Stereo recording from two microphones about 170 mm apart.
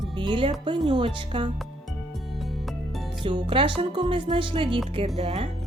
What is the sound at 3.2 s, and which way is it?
Speech, 30° right (ahead or behind).